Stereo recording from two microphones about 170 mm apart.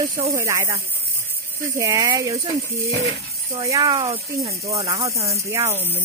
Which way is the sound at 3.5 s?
20° right (ahead or behind).